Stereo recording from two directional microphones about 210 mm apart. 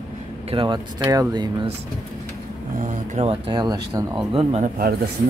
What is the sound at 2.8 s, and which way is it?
Speech, 35° right (ahead or behind).